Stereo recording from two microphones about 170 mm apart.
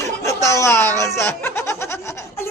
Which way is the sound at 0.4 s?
15° left (ahead or behind).